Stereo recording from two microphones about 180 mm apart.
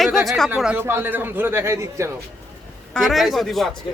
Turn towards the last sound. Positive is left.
turn(degrees=0)  # may be behind; listen again after turning